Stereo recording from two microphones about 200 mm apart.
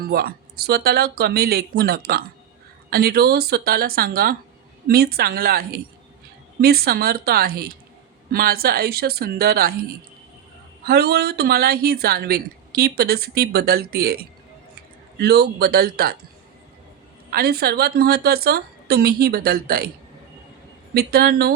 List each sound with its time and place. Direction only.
0.0 s speech: 50° right (ahead or behind)
10.8 s speech: 55° right (ahead or behind)
15.2 s speech: 55° right (ahead or behind)
17.3 s speech: 50° right (ahead or behind)
20.9 s speech: 50° right (ahead or behind)